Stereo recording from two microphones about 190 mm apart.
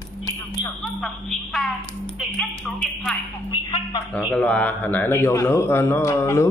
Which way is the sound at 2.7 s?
Centre (ahead or behind).